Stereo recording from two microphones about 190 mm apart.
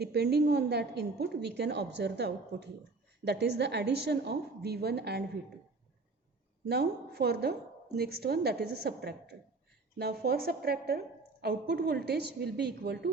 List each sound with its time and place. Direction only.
0.0 s a woman's voice: 60° right (ahead or behind)
6.7 s a woman's voice: 55° right (ahead or behind)